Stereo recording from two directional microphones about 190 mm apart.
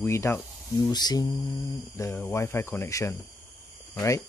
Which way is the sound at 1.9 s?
15° left (ahead or behind).